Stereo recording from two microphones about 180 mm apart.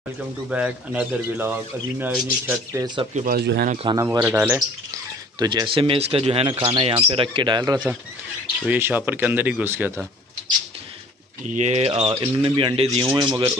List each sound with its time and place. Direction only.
0.5 s speech: 5° right (ahead or behind)
3.2 s speech: 55° right (ahead or behind)
3.7 s speech: 25° right (ahead or behind)
4.2 s speech: 10° right (ahead or behind)
5.4 s speech: 25° right (ahead or behind)
8.6 s speech: 10° right (ahead or behind)
11.4 s speech: 40° right (ahead or behind)
12.4 s speech: 30° right (ahead or behind)